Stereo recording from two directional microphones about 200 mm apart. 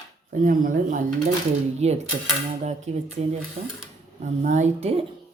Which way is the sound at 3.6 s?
50° right (ahead or behind).